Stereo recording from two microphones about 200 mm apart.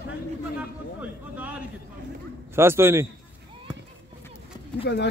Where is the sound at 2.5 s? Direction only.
10° right (ahead or behind).